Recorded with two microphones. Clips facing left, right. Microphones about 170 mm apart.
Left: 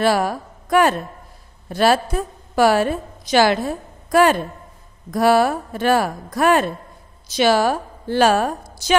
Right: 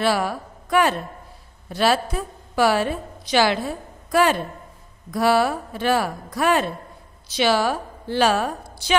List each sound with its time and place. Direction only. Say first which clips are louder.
0.0 s a woman's voice: left 3 dB; 45° left (ahead or behind)